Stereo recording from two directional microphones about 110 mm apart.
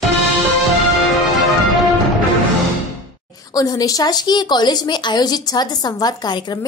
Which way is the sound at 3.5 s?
35° left (ahead or behind).